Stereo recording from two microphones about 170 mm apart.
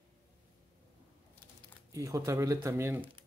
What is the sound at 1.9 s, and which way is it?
Speech, 20° right (ahead or behind).